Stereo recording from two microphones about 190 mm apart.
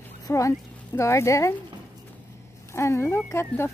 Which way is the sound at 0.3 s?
15° left (ahead or behind).